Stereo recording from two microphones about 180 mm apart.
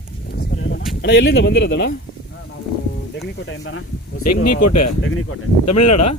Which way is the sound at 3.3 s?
90° left.